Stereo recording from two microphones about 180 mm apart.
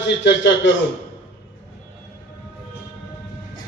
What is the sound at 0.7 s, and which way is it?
Speech, 90° left.